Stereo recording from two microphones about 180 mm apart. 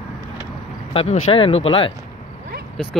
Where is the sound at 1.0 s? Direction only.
35° left (ahead or behind).